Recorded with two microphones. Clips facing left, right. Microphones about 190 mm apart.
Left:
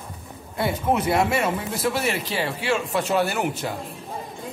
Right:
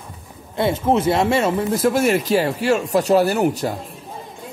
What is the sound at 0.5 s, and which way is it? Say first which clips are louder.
Speech: right 5 dB; 25° right (ahead or behind).